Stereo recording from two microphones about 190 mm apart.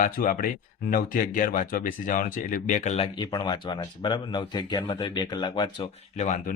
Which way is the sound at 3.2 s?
20° left (ahead or behind).